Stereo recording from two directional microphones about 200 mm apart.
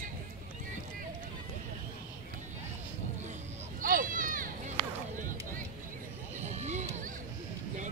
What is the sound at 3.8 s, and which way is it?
Run, 45° right (ahead or behind).